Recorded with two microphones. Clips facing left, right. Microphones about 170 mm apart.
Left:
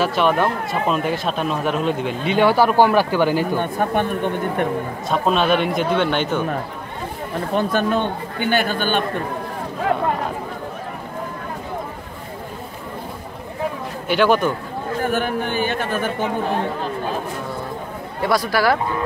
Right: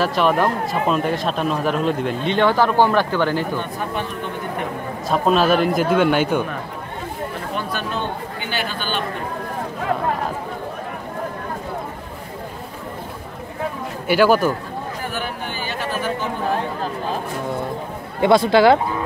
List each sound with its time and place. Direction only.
0.0 s speech: centre (ahead or behind)
3.5 s speech: 50° left (ahead or behind)
5.0 s speech: centre (ahead or behind)
7.5 s speech: 50° left (ahead or behind)
14.0 s speech: 5° right (ahead or behind)
15.0 s speech: 50° left (ahead or behind)
18.2 s speech: 25° right (ahead or behind)